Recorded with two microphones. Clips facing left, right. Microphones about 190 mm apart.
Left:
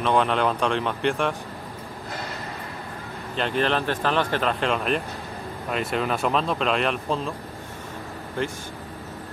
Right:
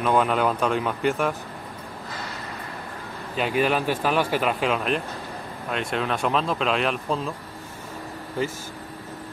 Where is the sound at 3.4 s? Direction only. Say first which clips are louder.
Right 1 dB; 10° right (ahead or behind).